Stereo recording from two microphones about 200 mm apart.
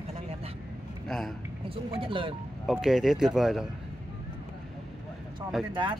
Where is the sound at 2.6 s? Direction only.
Centre (ahead or behind).